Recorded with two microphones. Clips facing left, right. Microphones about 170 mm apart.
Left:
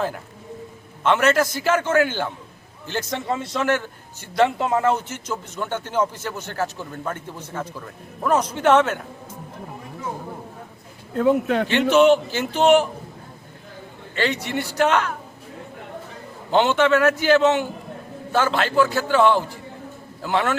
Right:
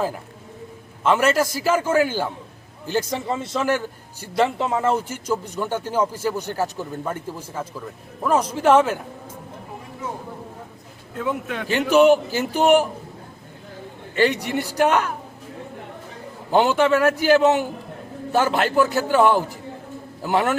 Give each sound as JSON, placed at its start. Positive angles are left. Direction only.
{"t": 1.0, "sound": "a man's voice", "side_deg": -5}
{"t": 11.2, "sound": "speech", "side_deg": 40}
{"t": 11.9, "sound": "a man's voice", "side_deg": -5}
{"t": 14.2, "sound": "a man's voice", "side_deg": -15}
{"t": 16.5, "sound": "a man's voice", "side_deg": -5}